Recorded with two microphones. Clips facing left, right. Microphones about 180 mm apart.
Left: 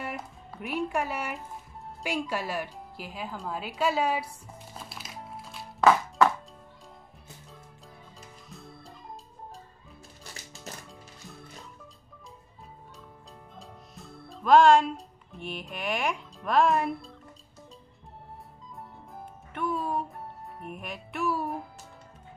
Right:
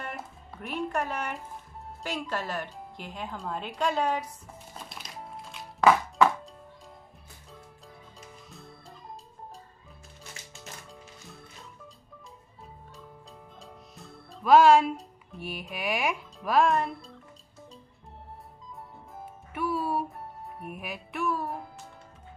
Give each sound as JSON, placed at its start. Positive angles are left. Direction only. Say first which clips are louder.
{"t": 0.0, "sound": "speech", "louder": "left 2 dB", "side_deg": 5}
{"t": 4.7, "sound": "music", "louder": "even", "side_deg": 5}
{"t": 5.8, "sound": "music", "louder": "even", "side_deg": -10}
{"t": 8.2, "sound": "music", "louder": "left 1 dB", "side_deg": 0}
{"t": 10.3, "sound": "music", "louder": "left 1 dB", "side_deg": 35}
{"t": 13.6, "sound": "speech", "louder": "left 1 dB", "side_deg": 0}
{"t": 19.1, "sound": "music", "louder": "right 1 dB", "side_deg": -5}